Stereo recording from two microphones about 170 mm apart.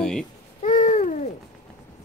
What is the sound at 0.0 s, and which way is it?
Babbling, 5° left (ahead or behind).